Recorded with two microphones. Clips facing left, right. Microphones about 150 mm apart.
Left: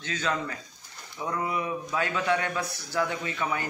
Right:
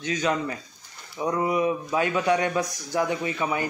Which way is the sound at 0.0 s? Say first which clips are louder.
Right 5 dB; 15° right (ahead or behind).